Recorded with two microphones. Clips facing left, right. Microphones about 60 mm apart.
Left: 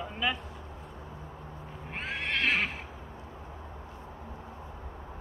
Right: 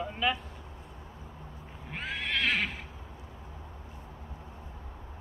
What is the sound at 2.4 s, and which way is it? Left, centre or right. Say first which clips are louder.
Neigh: left 2 dB; left.